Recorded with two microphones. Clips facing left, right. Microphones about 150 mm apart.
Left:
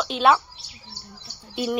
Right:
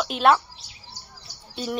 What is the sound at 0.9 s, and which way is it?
Chirp, 40° right (ahead or behind).